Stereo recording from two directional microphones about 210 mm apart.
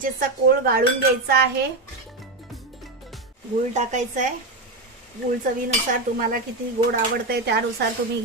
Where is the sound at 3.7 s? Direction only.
35° right (ahead or behind).